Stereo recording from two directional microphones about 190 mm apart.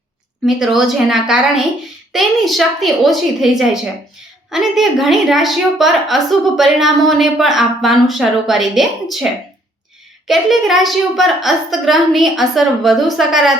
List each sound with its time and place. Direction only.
0.4 s a woman's voice: centre (ahead or behind)
10.2 s a woman's voice: centre (ahead or behind)